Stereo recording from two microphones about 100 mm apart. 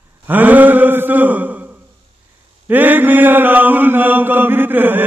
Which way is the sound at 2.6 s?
20° right (ahead or behind).